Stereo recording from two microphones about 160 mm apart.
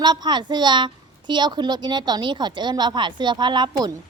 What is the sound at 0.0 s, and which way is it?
A woman's voice, 25° right (ahead or behind).